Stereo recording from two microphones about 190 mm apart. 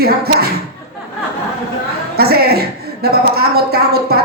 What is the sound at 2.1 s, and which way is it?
A woman's voice, 55° right (ahead or behind).